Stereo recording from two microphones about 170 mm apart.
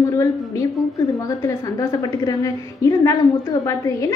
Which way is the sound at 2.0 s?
20° left (ahead or behind).